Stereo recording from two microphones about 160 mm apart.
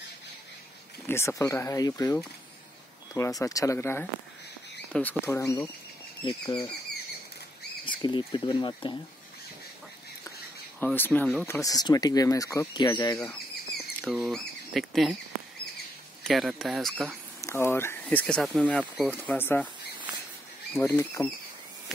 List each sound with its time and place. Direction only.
1.0 s speech: 15° left (ahead or behind)
3.2 s speech: 20° left (ahead or behind)
7.8 s speech: 30° left (ahead or behind)
10.8 s speech: 10° left (ahead or behind)
14.0 s speech: centre (ahead or behind)
16.3 s speech: centre (ahead or behind)
17.4 s speech: 15° left (ahead or behind)
18.2 s speech: centre (ahead or behind)
20.7 s speech: 15° left (ahead or behind)